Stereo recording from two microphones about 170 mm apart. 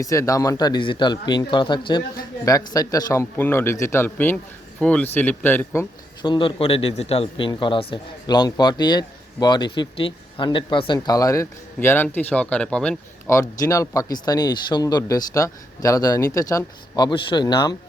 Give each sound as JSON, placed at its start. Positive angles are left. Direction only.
{"t": 0.0, "sound": "a man's voice", "side_deg": 20}
{"t": 6.2, "sound": "speech", "side_deg": 30}
{"t": 13.3, "sound": "speech", "side_deg": 20}